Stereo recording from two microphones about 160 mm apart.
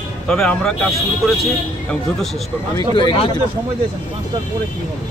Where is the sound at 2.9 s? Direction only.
30° left (ahead or behind).